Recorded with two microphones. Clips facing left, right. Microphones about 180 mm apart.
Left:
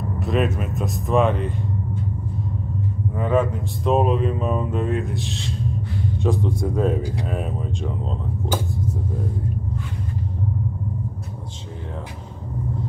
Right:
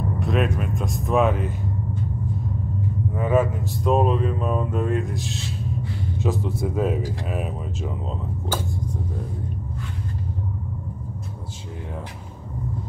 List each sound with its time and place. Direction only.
0.2 s speech: centre (ahead or behind)
3.2 s speech: 5° right (ahead or behind)